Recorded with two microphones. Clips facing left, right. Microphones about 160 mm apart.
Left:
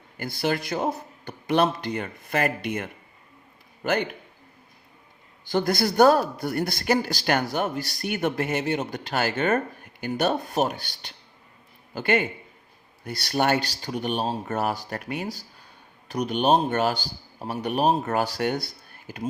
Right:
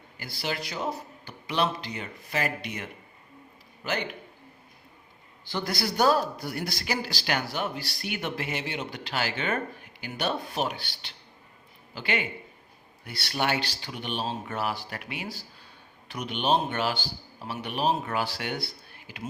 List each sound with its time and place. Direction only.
0.3 s a woman's voice: 50° left (ahead or behind)
5.5 s a woman's voice: 50° left (ahead or behind)